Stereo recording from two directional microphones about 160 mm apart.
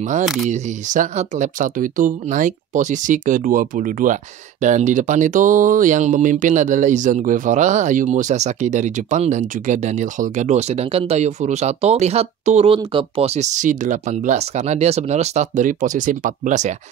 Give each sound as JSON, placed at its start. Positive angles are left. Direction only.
{"t": 0.2, "sound": "speech", "side_deg": 0}
{"t": 0.5, "sound": "speech", "side_deg": -50}